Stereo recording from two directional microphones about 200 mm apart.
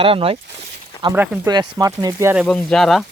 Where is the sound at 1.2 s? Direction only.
15° right (ahead or behind).